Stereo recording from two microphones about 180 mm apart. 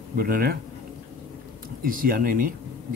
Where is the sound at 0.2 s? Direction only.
55° right (ahead or behind).